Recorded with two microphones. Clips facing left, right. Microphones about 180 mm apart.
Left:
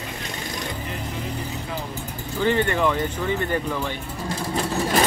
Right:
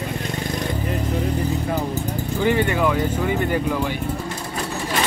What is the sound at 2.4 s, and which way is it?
Speech, 10° right (ahead or behind).